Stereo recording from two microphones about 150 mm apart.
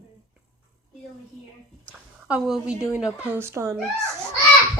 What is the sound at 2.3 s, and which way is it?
Speech, 5° right (ahead or behind).